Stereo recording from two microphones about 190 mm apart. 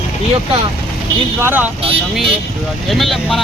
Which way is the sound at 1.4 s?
10° right (ahead or behind).